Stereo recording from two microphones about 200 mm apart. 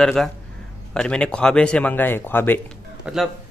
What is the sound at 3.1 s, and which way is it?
Speech, 5° right (ahead or behind).